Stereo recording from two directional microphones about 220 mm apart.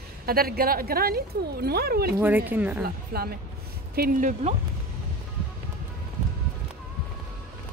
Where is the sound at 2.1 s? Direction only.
10° right (ahead or behind).